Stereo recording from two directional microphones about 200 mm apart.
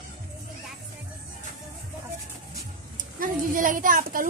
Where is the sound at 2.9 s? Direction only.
40° right (ahead or behind).